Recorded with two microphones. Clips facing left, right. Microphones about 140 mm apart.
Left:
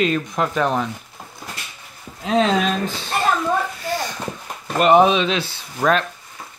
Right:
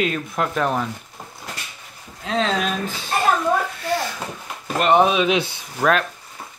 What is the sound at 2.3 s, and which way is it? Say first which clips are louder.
Speech: left 4 dB; 15° left (ahead or behind).